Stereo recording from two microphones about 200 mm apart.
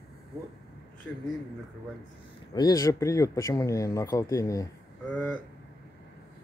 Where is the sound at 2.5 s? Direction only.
20° left (ahead or behind).